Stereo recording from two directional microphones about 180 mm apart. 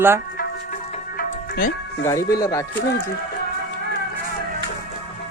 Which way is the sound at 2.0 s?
15° left (ahead or behind).